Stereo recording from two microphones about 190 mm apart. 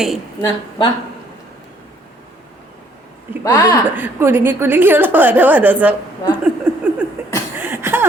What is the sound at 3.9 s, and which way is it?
A woman's voice, 10° right (ahead or behind).